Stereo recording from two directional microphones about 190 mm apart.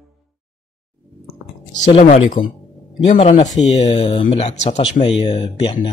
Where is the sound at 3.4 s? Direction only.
20° left (ahead or behind); by 5.0 s 35° left (ahead or behind).